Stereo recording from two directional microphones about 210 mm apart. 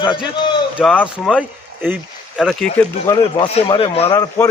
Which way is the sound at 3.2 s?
25° left (ahead or behind).